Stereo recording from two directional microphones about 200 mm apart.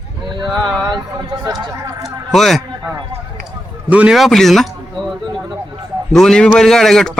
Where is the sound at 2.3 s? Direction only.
Centre (ahead or behind).